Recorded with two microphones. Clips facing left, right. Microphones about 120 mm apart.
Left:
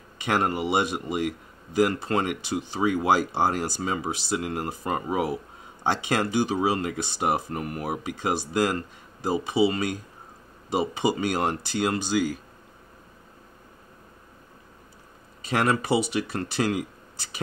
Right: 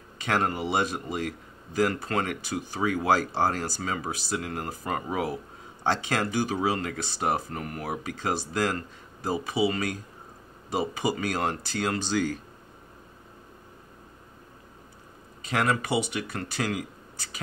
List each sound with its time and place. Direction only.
0.2 s speech: 15° left (ahead or behind)
15.5 s speech: 30° left (ahead or behind)